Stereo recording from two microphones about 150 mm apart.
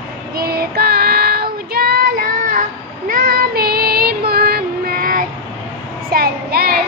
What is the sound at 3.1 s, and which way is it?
Child singing, 75° right (ahead or behind).